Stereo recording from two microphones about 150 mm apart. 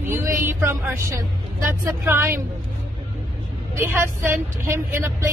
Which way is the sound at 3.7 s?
15° right (ahead or behind).